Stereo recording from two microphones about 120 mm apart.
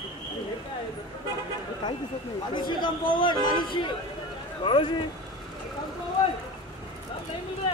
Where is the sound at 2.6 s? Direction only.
40° left (ahead or behind).